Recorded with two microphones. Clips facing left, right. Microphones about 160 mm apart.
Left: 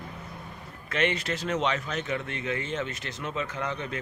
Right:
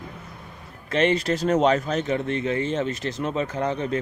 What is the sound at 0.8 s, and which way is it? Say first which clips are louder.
Speech: right 7 dB; 35° right (ahead or behind).